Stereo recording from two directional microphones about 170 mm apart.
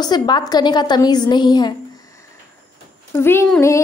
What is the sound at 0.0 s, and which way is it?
A woman's voice, 25° left (ahead or behind).